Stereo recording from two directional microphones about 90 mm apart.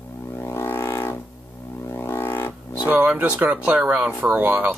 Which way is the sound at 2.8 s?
20° right (ahead or behind).